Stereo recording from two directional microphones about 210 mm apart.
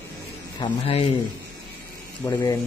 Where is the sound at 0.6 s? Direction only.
30° left (ahead or behind).